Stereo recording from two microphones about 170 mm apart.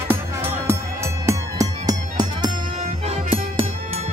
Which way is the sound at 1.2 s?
20° right (ahead or behind).